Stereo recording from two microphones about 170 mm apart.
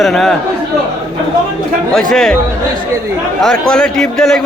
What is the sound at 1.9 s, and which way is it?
Speech, centre (ahead or behind).